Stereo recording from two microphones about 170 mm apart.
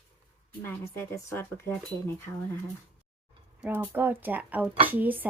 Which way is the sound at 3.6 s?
10° right (ahead or behind).